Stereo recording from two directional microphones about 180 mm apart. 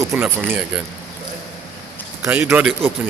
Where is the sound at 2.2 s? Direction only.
10° right (ahead or behind).